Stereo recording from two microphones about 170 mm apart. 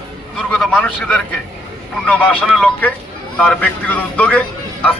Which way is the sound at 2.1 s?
10° left (ahead or behind).